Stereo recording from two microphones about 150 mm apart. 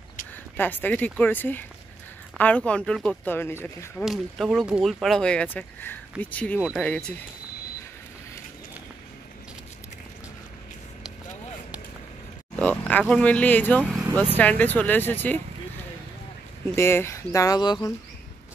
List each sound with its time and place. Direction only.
0.6 s speech: 10° left (ahead or behind)
4.0 s speech: centre (ahead or behind)
12.5 s a sound: 10° left (ahead or behind)
13.1 s speech: 10° left (ahead or behind)
16.7 s speech: 15° left (ahead or behind)